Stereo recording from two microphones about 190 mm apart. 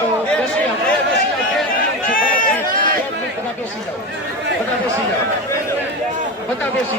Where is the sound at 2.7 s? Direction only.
45° right (ahead or behind).